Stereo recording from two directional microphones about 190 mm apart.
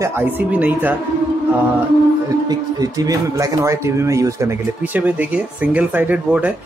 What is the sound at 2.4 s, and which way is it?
Speech, 20° right (ahead or behind).